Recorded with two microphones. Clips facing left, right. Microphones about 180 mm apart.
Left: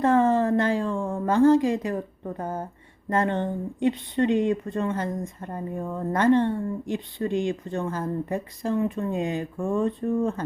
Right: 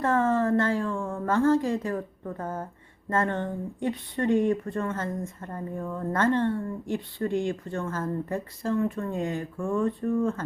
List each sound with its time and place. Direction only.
0.0 s speech: 20° left (ahead or behind)